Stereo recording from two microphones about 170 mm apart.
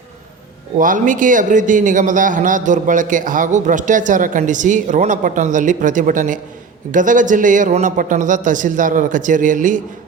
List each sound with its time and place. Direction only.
0.8 s a man's voice: 50° right (ahead or behind)